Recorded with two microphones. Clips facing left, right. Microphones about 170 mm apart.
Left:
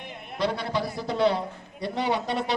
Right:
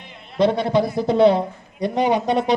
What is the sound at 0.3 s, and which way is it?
A man's voice, 20° right (ahead or behind).